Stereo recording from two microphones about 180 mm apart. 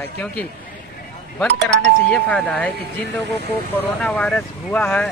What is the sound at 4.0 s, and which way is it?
Speech, 5° left (ahead or behind).